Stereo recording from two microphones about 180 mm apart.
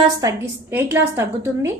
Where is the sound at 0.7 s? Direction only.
10° right (ahead or behind).